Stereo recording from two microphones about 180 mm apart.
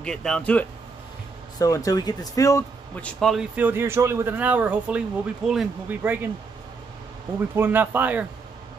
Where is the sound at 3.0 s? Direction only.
5° left (ahead or behind).